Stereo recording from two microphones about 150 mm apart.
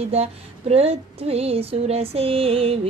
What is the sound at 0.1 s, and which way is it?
Speech, 45° right (ahead or behind).